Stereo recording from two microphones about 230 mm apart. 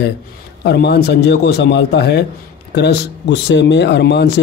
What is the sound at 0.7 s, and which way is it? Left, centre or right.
Speech, left.